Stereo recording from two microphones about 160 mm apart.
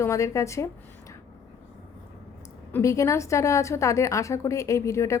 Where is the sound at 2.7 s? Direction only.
20° left (ahead or behind).